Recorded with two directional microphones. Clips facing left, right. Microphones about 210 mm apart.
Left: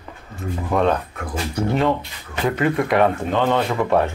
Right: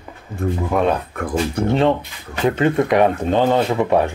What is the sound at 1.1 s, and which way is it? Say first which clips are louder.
Speech: right 5 dB; 55° right (ahead or behind).